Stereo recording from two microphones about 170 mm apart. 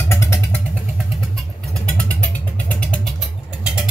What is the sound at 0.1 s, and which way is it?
Vehicle, 15° left (ahead or behind).